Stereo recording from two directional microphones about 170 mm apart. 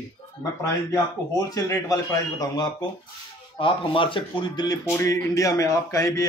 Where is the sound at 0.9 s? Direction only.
20° left (ahead or behind).